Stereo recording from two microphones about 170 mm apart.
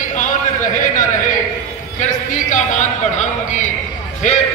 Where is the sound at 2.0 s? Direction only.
45° left (ahead or behind).